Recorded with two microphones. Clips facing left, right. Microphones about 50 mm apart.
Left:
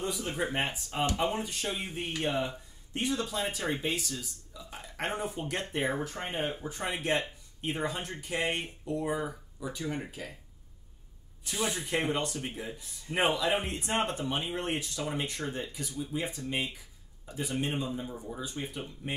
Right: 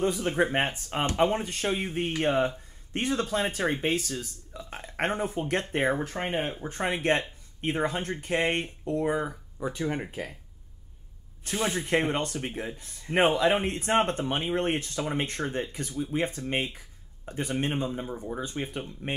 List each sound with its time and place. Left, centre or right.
0.0 s speech: right
6.2 s speech: right
6.7 s speech: right
11.4 s speech: right